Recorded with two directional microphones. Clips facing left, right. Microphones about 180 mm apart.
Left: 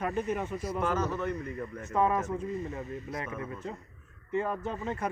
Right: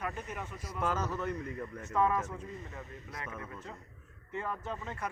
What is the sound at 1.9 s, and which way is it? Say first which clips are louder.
Speech: left 3 dB; 20° left (ahead or behind).